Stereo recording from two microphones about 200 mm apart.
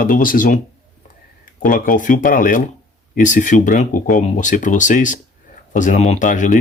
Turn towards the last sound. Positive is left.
turn(degrees=40)  # may be behind; listen again after turning